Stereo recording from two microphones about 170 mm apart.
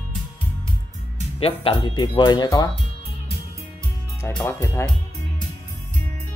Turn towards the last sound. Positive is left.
turn(degrees=15)  # may be behind; listen again after turning